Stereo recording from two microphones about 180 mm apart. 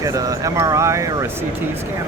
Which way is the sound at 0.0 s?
20° right (ahead or behind).